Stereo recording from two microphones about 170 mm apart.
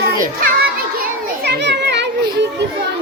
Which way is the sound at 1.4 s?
80° right.